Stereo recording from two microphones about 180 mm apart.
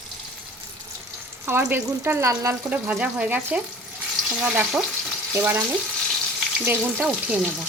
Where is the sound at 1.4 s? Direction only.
15° right (ahead or behind).